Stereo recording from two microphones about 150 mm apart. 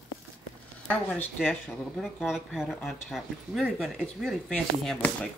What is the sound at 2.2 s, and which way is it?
Speech, 5° right (ahead or behind).